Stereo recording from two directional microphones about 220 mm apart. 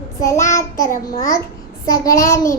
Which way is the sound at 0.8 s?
35° left (ahead or behind).